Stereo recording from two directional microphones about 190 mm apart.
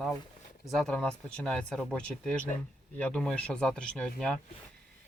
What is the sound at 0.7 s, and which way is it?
Speech, 5° left (ahead or behind).